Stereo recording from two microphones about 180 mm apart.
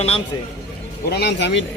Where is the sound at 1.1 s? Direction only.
65° left (ahead or behind).